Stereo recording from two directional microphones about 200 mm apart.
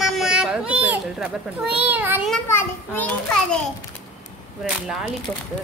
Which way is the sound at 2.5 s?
10° left (ahead or behind).